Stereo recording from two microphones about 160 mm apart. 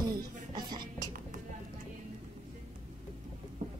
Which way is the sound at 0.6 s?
25° right (ahead or behind).